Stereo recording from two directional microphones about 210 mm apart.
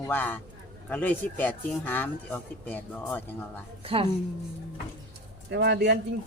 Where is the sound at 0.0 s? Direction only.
10° left (ahead or behind).